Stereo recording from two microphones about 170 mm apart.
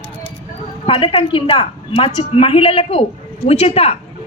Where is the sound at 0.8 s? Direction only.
35° left (ahead or behind).